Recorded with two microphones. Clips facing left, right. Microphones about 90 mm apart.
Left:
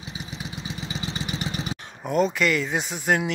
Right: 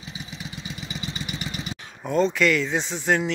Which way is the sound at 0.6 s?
30° left (ahead or behind).